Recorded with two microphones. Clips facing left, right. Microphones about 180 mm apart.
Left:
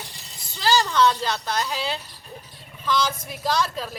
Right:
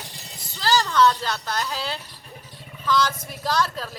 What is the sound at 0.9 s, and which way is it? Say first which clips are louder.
Speech: right 1 dB; 20° left (ahead or behind).